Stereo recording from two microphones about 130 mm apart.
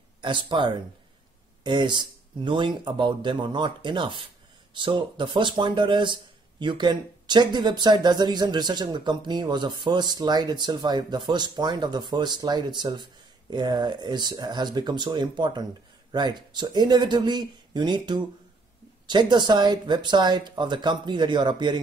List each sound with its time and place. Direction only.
0.2 s speech: 40° right (ahead or behind)